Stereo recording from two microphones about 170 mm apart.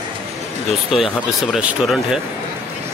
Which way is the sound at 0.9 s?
5° right (ahead or behind).